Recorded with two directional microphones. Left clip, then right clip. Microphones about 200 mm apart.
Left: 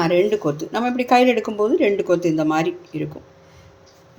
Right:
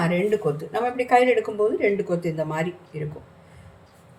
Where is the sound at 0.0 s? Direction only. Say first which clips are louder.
Left 5 dB; 45° left (ahead or behind).